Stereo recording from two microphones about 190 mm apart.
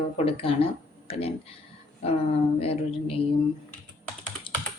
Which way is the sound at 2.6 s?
30° left (ahead or behind).